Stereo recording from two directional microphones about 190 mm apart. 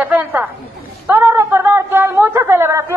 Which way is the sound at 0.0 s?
10° right (ahead or behind).